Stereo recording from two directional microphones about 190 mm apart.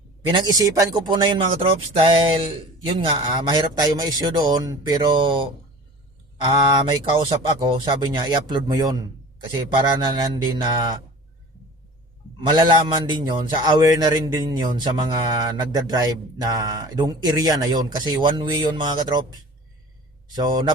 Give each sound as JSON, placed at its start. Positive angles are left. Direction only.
{"t": 0.3, "sound": "a man's voice", "side_deg": -20}
{"t": 12.4, "sound": "a man's voice", "side_deg": -25}
{"t": 20.3, "sound": "a man's voice", "side_deg": -20}